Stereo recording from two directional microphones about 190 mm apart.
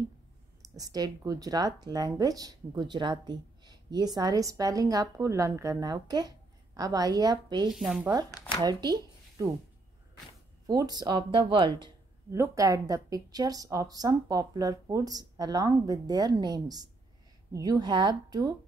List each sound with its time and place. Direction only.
0.7 s speech: 20° right (ahead or behind)
7.7 s speech: 5° right (ahead or behind)
8.1 s speech: 20° right (ahead or behind)
10.7 s speech: 20° right (ahead or behind)